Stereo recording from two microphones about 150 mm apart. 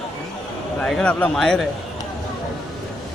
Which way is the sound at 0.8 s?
5° left (ahead or behind).